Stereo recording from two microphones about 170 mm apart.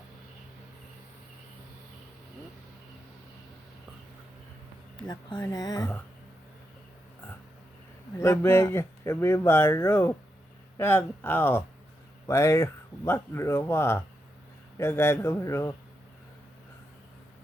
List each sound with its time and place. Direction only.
4.9 s speech: 25° left (ahead or behind)
8.2 s speech: 15° left (ahead or behind)